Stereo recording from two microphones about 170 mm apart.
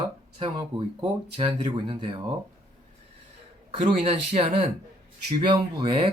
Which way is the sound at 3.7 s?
35° right (ahead or behind).